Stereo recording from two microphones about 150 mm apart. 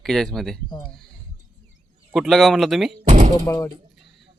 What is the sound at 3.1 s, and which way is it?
Speech, 55° right (ahead or behind).